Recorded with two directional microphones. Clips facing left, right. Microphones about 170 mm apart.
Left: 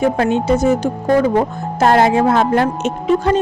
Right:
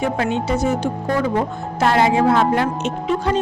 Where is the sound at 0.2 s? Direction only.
45° left (ahead or behind).